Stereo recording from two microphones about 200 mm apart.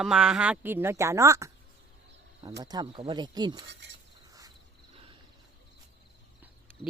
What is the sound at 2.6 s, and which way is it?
Speech, 20° right (ahead or behind).